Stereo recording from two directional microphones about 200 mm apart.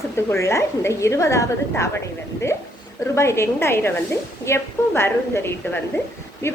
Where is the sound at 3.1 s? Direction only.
15° left (ahead or behind).